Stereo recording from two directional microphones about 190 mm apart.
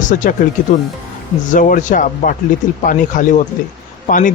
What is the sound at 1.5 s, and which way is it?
Speech, 45° left (ahead or behind).